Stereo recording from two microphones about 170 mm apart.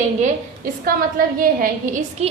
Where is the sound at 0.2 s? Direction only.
55° right (ahead or behind).